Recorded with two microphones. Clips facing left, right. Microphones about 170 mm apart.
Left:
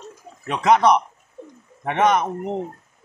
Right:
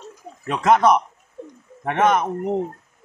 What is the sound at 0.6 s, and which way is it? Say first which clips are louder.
Speech: even; centre (ahead or behind).